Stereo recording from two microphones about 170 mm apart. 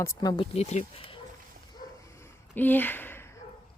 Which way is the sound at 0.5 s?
40° left (ahead or behind).